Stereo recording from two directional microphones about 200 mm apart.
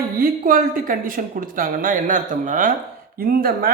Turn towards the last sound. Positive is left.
turn(degrees=-45)  # may be behind; listen again after turning